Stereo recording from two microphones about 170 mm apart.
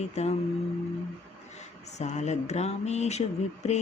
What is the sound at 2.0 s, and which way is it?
Speech, 40° left (ahead or behind).